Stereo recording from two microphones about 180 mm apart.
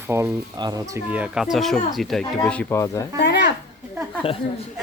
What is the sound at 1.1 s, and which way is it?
Speech, 5° right (ahead or behind).